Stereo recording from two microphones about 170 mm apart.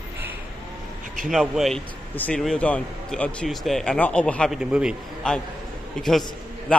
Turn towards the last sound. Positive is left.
turn(degrees=0)  # may be behind; listen again after turning